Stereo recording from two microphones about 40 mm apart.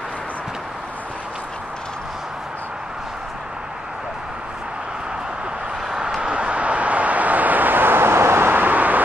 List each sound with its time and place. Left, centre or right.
5.9 s a sound: centre
6.2 s vehicle: right
8.6 s vehicle: right